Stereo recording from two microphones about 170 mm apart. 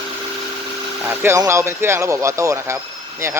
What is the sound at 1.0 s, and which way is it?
Speech, 15° right (ahead or behind).